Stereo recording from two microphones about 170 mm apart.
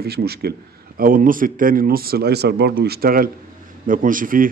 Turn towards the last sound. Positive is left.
turn(degrees=-55)  # may be behind; listen again after turning